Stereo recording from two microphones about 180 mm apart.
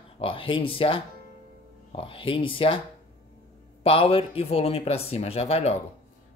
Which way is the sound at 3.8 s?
30° left (ahead or behind).